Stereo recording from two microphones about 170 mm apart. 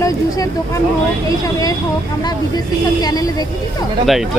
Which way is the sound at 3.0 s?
20° left (ahead or behind).